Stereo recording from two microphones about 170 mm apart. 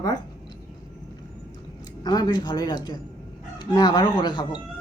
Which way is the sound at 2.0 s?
25° left (ahead or behind).